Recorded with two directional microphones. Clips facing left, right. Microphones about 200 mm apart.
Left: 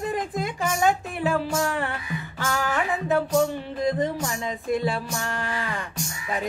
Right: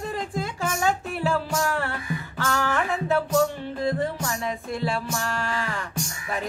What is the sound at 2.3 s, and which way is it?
Music, 15° left (ahead or behind).